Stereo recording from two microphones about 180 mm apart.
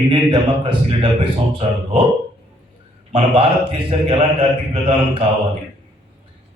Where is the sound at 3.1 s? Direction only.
30° right (ahead or behind).